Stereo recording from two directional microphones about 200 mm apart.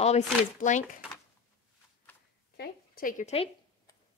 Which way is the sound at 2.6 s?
45° left (ahead or behind).